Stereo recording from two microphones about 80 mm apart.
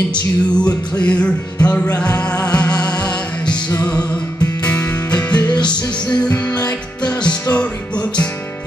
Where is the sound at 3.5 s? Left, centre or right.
Left.